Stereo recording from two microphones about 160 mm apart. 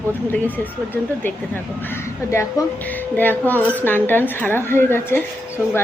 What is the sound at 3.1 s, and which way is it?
Speech, 10° left (ahead or behind).